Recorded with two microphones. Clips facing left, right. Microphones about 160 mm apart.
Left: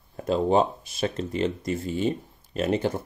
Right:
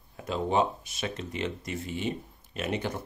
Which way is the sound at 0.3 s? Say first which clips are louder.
Left 5 dB; 35° left (ahead or behind).